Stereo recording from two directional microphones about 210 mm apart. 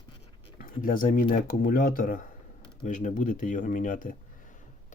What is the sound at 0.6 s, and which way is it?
Speech, 40° left (ahead or behind).